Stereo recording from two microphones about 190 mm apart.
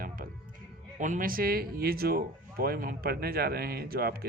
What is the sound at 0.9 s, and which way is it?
Speech, 40° right (ahead or behind).